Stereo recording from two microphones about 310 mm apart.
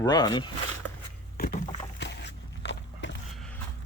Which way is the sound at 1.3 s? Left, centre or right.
Left.